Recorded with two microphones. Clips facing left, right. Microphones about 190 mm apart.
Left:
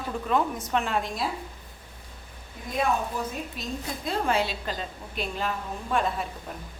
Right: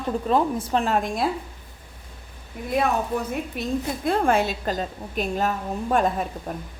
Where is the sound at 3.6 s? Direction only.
60° right (ahead or behind); by 6.6 s 45° right (ahead or behind).